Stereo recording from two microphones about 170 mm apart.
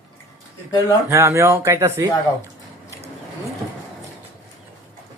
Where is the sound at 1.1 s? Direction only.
15° right (ahead or behind).